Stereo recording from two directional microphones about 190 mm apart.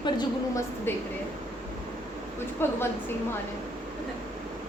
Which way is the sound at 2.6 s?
10° left (ahead or behind).